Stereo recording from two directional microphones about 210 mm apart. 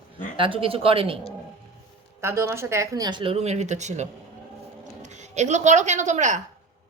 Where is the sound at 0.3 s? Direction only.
25° right (ahead or behind).